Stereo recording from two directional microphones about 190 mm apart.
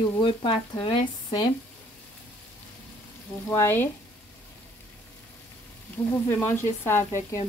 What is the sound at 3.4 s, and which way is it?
Speech, 10° left (ahead or behind).